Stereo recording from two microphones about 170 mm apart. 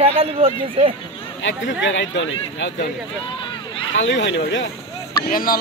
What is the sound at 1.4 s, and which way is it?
Speech, 90° left.